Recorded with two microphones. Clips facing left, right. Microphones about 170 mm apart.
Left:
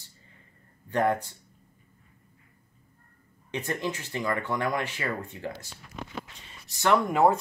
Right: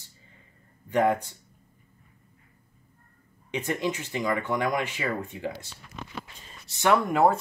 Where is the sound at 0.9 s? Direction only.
15° right (ahead or behind).